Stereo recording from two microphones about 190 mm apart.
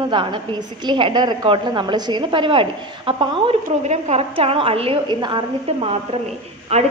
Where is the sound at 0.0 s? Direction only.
25° right (ahead or behind).